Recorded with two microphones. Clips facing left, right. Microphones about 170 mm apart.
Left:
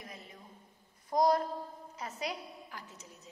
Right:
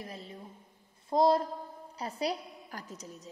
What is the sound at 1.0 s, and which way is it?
A woman's voice, 25° right (ahead or behind).